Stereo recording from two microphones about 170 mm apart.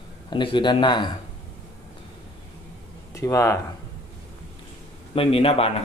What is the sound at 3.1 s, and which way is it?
Speech, 20° left (ahead or behind).